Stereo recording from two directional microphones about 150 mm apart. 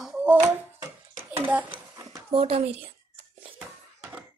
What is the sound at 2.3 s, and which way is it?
Speech, 40° right (ahead or behind).